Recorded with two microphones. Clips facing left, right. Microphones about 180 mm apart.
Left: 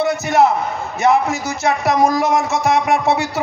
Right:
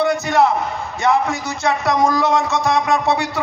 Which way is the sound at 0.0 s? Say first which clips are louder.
Left 1 dB; 20° left (ahead or behind).